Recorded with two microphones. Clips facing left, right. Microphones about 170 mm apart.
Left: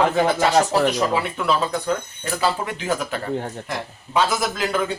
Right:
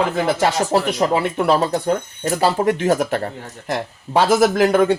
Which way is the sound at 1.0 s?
40° right (ahead or behind).